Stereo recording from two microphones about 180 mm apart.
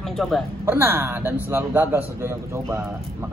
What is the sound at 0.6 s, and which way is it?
A man's voice, 10° right (ahead or behind).